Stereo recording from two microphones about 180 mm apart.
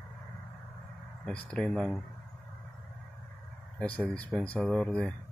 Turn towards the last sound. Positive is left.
turn(degrees=5)  # may be behind; listen again after turning